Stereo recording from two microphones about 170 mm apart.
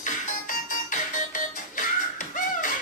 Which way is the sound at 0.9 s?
50° left (ahead or behind).